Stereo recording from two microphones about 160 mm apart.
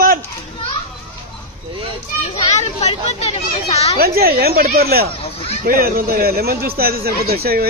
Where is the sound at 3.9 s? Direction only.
70° right (ahead or behind).